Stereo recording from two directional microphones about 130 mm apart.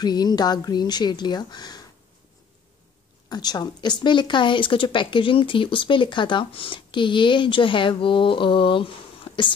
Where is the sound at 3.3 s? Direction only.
30° left (ahead or behind).